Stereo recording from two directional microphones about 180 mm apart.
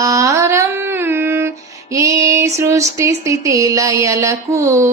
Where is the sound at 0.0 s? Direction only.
20° right (ahead or behind).